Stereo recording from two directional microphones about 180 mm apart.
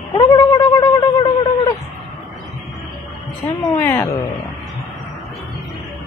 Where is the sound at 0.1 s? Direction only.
25° left (ahead or behind).